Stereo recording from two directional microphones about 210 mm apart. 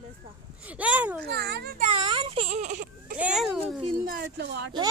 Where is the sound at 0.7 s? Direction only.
5° right (ahead or behind).